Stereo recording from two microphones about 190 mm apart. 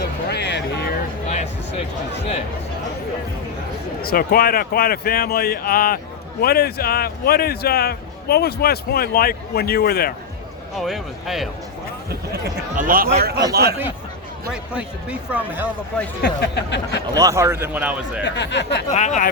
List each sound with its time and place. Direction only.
0.0 s music: 60° left (ahead or behind)
4.0 s speech: 50° left (ahead or behind)
10.8 s speech: centre (ahead or behind)
12.3 s speech: 50° right (ahead or behind)
14.5 s speech: 5° right (ahead or behind)
16.2 s a sound: 60° left (ahead or behind)
17.2 s speech: 15° right (ahead or behind)
18.2 s a sound: 65° left (ahead or behind)
18.9 s speech: 40° left (ahead or behind)